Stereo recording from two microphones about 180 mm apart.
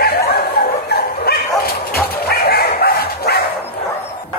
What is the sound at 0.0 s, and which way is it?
Bow-wow, 60° left (ahead or behind).